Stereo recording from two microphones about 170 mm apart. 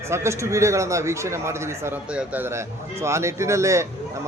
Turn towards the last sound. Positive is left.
turn(degrees=-15)  # may be behind; listen again after turning